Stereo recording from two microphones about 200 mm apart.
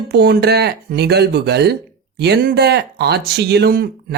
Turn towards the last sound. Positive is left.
turn(degrees=-50)  # may be behind; listen again after turning